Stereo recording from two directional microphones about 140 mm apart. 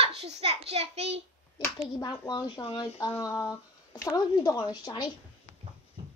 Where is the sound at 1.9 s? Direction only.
25° left (ahead or behind).